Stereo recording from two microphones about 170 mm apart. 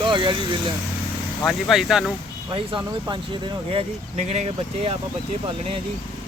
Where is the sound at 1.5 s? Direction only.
Centre (ahead or behind).